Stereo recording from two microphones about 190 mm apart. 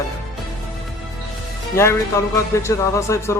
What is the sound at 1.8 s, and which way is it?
A man's voice, 15° left (ahead or behind).